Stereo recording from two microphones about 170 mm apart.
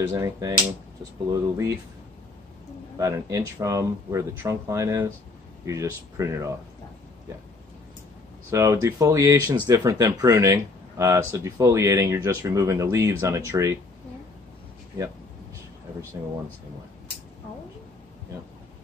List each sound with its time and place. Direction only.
0.0 s speech: 20° right (ahead or behind)
3.0 s speech: 20° right (ahead or behind)
8.5 s speech: 15° right (ahead or behind)